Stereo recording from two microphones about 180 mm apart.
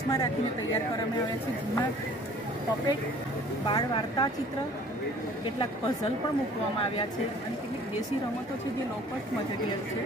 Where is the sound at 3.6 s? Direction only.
25° left (ahead or behind).